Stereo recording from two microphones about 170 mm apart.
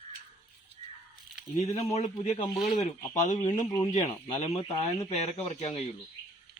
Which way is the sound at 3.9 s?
45° left (ahead or behind).